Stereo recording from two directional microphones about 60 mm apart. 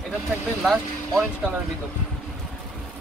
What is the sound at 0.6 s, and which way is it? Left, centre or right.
Speech, centre.